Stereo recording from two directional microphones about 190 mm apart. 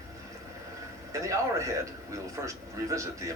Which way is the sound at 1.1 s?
15° right (ahead or behind).